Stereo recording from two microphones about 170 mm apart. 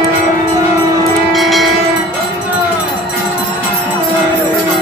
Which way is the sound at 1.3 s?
Centre (ahead or behind).